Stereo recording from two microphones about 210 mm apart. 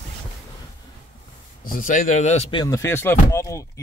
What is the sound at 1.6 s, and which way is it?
Speech, 40° left (ahead or behind).